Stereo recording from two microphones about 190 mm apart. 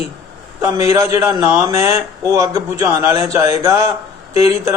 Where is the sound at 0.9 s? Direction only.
15° right (ahead or behind).